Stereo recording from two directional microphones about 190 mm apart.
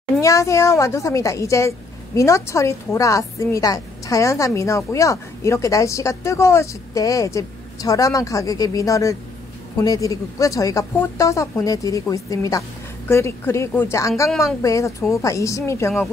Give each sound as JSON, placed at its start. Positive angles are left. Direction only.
{"t": 0.2, "sound": "speech", "side_deg": 15}